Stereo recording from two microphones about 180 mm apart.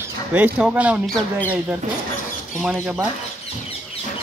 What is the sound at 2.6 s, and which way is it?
Speech, 10° right (ahead or behind).